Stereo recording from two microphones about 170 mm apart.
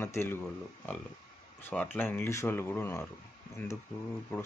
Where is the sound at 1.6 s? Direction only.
10° left (ahead or behind).